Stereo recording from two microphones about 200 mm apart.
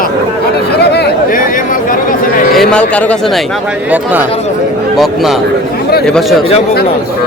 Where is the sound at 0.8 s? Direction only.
55° left (ahead or behind).